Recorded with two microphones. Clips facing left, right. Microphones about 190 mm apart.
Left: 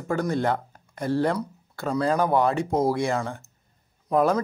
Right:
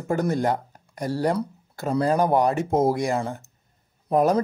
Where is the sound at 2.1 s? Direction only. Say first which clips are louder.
Right 1 dB; 15° right (ahead or behind).